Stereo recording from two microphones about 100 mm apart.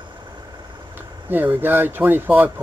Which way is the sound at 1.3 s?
20° right (ahead or behind).